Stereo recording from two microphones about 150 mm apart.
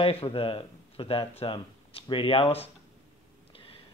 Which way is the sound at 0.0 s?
35° left (ahead or behind).